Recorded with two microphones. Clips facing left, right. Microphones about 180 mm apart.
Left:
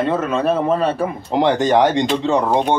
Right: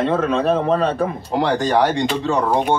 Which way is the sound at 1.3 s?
20° left (ahead or behind).